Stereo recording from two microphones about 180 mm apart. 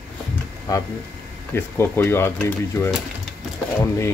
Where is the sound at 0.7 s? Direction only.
20° left (ahead or behind).